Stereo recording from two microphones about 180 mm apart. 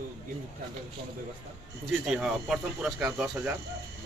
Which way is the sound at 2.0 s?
5° right (ahead or behind).